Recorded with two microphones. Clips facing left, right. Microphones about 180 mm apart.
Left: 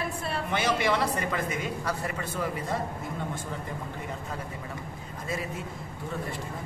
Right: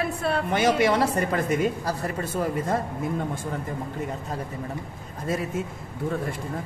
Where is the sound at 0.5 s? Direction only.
40° right (ahead or behind).